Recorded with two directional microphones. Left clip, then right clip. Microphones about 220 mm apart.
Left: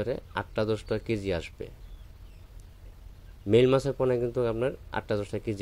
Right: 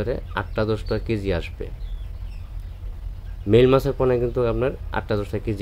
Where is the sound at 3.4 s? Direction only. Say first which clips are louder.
Right 6 dB; 30° left (ahead or behind).